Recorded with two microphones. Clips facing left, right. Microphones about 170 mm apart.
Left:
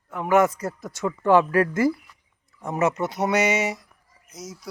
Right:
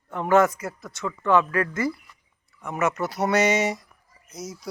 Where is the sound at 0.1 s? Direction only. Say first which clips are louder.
Right 1 dB; 5° left (ahead or behind).